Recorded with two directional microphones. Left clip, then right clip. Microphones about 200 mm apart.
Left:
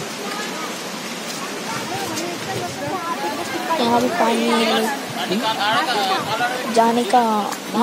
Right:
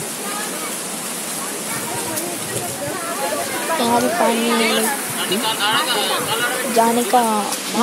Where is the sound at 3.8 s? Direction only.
Centre (ahead or behind).